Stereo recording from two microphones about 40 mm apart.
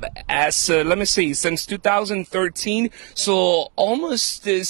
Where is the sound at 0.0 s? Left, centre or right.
Centre.